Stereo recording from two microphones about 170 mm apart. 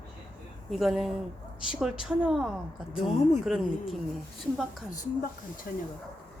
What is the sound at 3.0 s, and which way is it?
Speech, 35° left (ahead or behind).